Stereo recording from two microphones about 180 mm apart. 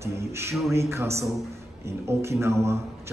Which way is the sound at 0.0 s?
15° right (ahead or behind).